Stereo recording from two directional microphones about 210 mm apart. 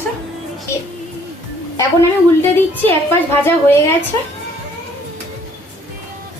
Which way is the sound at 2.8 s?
10° left (ahead or behind).